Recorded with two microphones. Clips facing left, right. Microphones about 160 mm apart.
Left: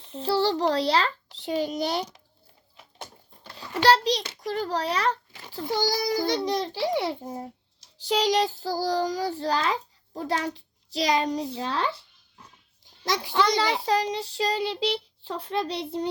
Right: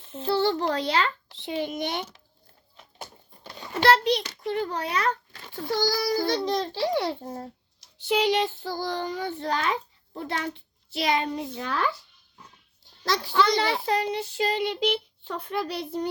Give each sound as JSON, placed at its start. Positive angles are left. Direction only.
{"t": 0.2, "sound": "child singing", "side_deg": 35}
{"t": 3.8, "sound": "child singing", "side_deg": 35}
{"t": 5.3, "sound": "a sound", "side_deg": 10}
{"t": 5.6, "sound": "a child's voice", "side_deg": 20}
{"t": 7.9, "sound": "child singing", "side_deg": 35}
{"t": 13.1, "sound": "a child's voice", "side_deg": 20}
{"t": 13.8, "sound": "child singing", "side_deg": 30}